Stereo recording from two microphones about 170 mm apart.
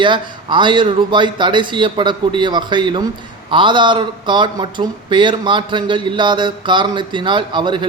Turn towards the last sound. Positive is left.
turn(degrees=-25)  # may be behind; listen again after turning